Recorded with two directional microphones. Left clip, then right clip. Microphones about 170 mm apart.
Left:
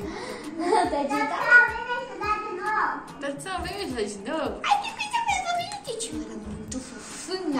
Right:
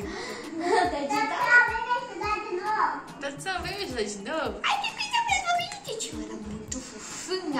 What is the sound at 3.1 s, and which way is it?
Speech, 15° right (ahead or behind).